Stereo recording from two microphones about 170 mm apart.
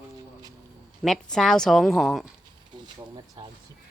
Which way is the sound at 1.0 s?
Centre (ahead or behind).